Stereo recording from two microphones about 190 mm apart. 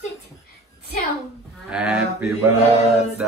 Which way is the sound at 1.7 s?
5° right (ahead or behind).